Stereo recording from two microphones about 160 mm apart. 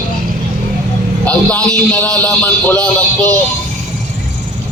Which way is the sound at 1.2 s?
10° left (ahead or behind).